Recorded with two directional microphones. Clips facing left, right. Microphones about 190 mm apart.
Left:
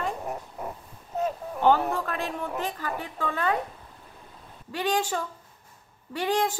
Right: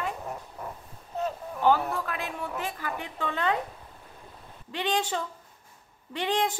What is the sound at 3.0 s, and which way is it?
Speech, 20° right (ahead or behind).